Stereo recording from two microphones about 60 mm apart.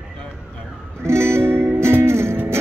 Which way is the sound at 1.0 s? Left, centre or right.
Right.